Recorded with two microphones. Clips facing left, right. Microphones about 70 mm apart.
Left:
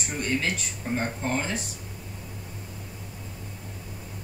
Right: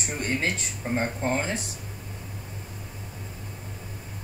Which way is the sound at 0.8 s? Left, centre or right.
Centre.